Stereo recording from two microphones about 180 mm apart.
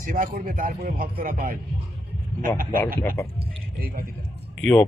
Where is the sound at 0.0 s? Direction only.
50° right (ahead or behind).